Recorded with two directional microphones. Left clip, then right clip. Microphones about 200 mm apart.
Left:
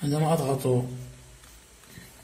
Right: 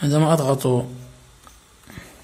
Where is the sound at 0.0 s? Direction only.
45° right (ahead or behind).